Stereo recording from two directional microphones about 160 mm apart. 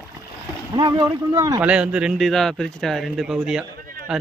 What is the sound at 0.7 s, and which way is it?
Speech, 25° right (ahead or behind).